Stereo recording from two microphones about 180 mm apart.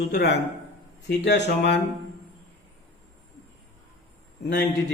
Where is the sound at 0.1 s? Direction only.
65° left (ahead or behind).